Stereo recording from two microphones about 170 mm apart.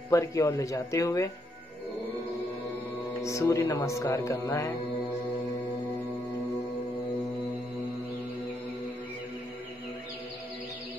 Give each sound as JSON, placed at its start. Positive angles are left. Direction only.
{"t": 0.1, "sound": "speech", "side_deg": 20}
{"t": 3.2, "sound": "speech", "side_deg": 15}